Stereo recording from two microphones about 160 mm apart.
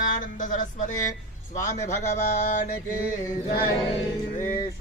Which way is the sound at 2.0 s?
45° left (ahead or behind).